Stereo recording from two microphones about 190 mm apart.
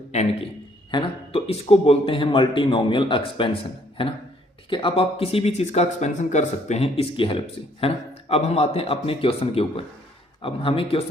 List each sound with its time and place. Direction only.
0.9 s a man's voice: 25° left (ahead or behind)